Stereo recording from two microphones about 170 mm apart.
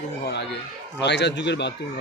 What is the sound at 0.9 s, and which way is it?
Speech, 90° left.